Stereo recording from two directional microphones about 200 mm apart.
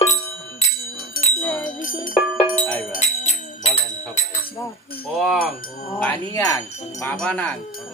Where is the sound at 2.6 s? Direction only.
5° left (ahead or behind).